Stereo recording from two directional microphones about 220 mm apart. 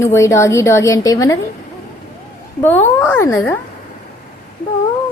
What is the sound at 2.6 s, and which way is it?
Speech, 10° left (ahead or behind).